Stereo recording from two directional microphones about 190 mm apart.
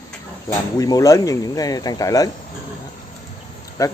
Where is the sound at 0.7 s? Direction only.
20° left (ahead or behind).